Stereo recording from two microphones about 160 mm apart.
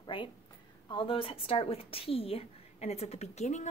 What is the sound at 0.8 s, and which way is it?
A woman's voice, 35° left (ahead or behind).